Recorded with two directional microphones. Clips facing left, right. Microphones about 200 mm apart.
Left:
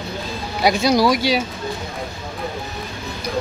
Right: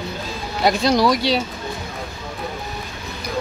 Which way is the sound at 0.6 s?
5° left (ahead or behind).